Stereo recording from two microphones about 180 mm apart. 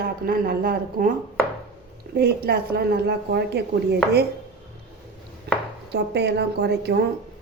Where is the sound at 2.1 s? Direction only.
60° right (ahead or behind).